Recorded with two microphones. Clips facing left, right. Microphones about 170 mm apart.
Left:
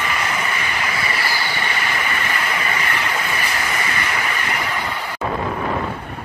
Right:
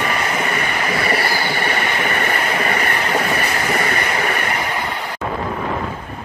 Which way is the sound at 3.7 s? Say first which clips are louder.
Right 4 dB; 45° right (ahead or behind).